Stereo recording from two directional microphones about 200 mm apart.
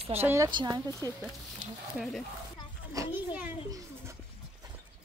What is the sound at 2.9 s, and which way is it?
A child's voice, 10° right (ahead or behind).